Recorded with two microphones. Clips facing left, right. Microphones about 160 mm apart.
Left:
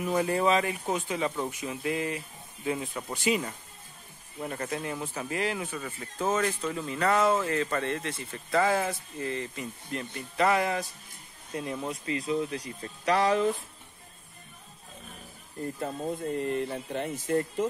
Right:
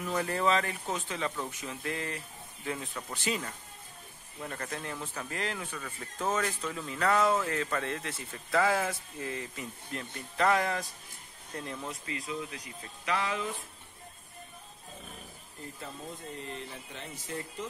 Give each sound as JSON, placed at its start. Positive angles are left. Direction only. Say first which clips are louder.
{"t": 0.0, "sound": "speech", "louder": "left 4 dB", "side_deg": 15}
{"t": 6.2, "sound": "speech", "louder": "left 4 dB", "side_deg": 0}
{"t": 12.1, "sound": "speech", "louder": "left 10 dB", "side_deg": 30}
{"t": 15.6, "sound": "speech", "louder": "left 10 dB", "side_deg": 50}